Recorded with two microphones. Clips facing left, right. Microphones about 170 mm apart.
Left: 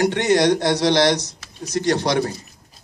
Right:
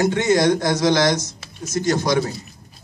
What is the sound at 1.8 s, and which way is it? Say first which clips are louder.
Speech: even; 65° left (ahead or behind).